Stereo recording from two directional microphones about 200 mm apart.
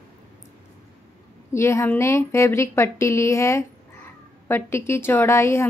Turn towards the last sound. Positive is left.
turn(degrees=15)  # may be behind; listen again after turning